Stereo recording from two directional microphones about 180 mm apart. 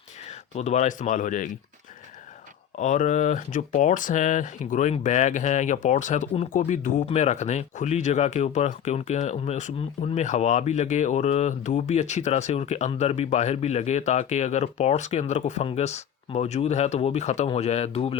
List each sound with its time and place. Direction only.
0.5 s speech: 40° left (ahead or behind)
2.7 s speech: 40° left (ahead or behind)